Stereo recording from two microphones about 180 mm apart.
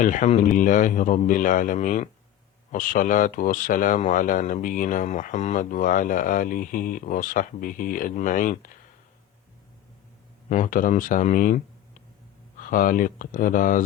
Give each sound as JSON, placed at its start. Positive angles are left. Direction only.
{"t": 0.0, "sound": "speech", "side_deg": 40}
{"t": 10.5, "sound": "speech", "side_deg": 45}